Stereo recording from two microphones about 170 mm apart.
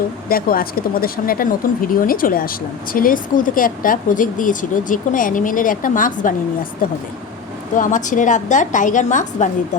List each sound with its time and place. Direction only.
0.3 s speech: 60° left (ahead or behind)
7.8 s speech: 50° left (ahead or behind)